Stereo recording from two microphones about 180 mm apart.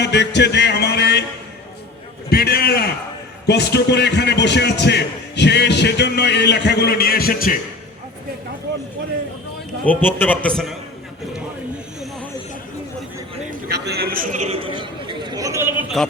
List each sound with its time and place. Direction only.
0.0 s music: 70° left (ahead or behind)
2.3 s a sound: 60° left (ahead or behind)
3.4 s a man's voice: 65° left (ahead or behind)
9.8 s a man's voice: 10° left (ahead or behind)
13.7 s chatter: 65° right (ahead or behind); by 15.7 s 15° right (ahead or behind)
16.0 s speech: centre (ahead or behind)